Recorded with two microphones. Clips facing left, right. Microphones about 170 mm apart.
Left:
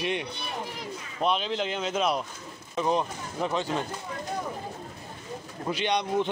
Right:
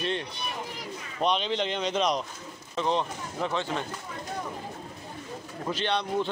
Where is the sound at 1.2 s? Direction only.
5° left (ahead or behind).